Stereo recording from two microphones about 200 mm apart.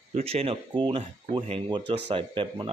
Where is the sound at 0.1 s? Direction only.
30° right (ahead or behind).